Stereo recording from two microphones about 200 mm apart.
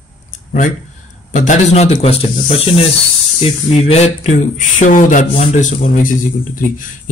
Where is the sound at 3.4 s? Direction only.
30° left (ahead or behind).